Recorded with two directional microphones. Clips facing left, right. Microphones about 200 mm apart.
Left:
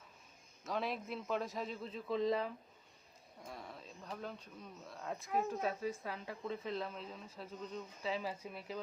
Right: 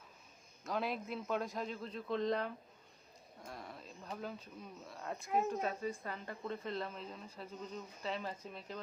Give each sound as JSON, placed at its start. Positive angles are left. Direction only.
{"t": 0.6, "sound": "speech", "side_deg": 0}